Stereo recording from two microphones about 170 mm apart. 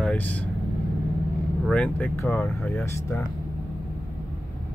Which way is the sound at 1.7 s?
10° left (ahead or behind).